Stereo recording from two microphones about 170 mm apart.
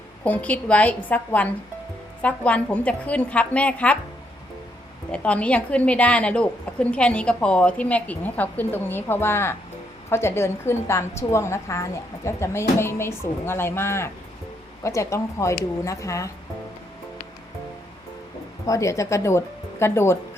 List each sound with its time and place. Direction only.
0.3 s a woman's voice: 10° left (ahead or behind)
5.1 s a woman's voice: 5° left (ahead or behind)
18.6 s a woman's voice: 20° left (ahead or behind)